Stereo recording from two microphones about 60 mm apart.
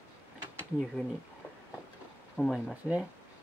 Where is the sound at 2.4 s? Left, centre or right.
Left.